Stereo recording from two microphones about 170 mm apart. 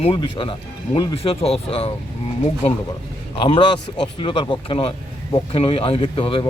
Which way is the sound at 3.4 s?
30° left (ahead or behind).